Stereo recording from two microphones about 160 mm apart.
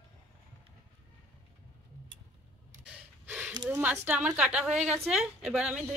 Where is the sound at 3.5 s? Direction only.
25° right (ahead or behind).